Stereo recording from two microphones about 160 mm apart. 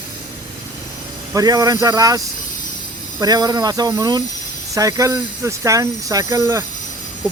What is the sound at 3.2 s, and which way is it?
Speech, 25° right (ahead or behind).